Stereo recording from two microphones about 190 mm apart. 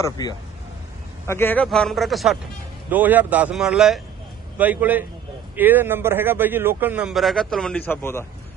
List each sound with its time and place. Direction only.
0.0 s a man's voice: 20° left (ahead or behind)